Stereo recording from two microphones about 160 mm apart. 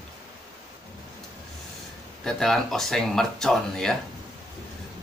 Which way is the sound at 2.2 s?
5° left (ahead or behind).